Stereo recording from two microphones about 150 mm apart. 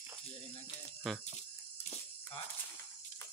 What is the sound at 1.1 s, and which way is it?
Speech, centre (ahead or behind).